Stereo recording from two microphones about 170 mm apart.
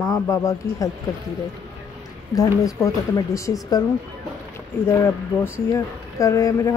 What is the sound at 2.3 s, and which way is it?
A woman's voice, 20° left (ahead or behind).